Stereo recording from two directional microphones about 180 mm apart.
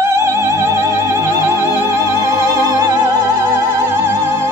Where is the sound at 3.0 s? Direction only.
15° right (ahead or behind).